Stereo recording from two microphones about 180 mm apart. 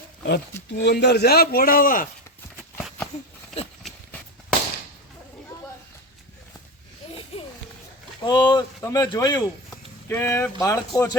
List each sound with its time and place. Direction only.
0.3 s a man's voice: 65° left (ahead or behind); by 2.0 s 50° left (ahead or behind)
7.0 s a sound: 30° left (ahead or behind)
8.2 s speech: 25° left (ahead or behind)